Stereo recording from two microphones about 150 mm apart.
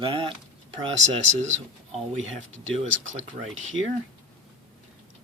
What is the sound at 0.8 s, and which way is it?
Speech, 45° right (ahead or behind).